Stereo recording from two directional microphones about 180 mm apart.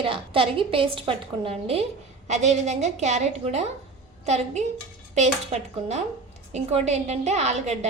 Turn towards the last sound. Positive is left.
turn(degrees=-40)  # may be behind; listen again after turning